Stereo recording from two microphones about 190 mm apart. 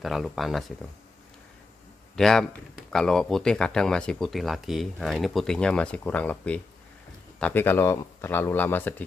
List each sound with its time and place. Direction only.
0.0 s speech: centre (ahead or behind)
2.1 s speech: 5° left (ahead or behind)